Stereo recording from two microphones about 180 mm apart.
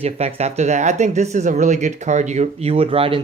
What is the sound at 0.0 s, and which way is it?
Speech, 35° right (ahead or behind).